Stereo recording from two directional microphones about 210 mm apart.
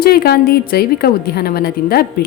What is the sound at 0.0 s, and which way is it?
A woman's voice, 50° left (ahead or behind).